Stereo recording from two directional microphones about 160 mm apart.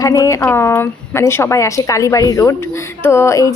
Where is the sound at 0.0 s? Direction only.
20° left (ahead or behind).